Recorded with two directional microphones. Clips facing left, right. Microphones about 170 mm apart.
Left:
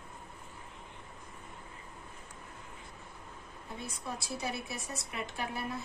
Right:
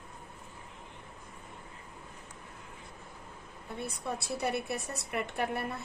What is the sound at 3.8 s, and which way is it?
A woman's voice, 60° right (ahead or behind).